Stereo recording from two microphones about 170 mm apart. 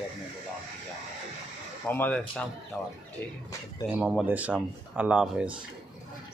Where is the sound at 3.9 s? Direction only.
5° right (ahead or behind).